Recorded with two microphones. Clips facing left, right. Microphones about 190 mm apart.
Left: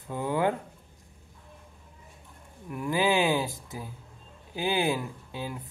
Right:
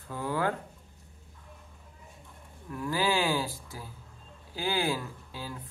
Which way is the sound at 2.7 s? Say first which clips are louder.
Left 3 dB; 20° left (ahead or behind).